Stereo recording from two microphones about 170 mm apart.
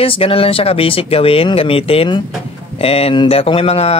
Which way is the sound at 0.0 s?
35° left (ahead or behind).